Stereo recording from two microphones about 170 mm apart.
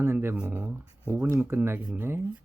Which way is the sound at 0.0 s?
15° right (ahead or behind).